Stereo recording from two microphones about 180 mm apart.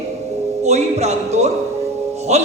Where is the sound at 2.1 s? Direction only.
35° right (ahead or behind).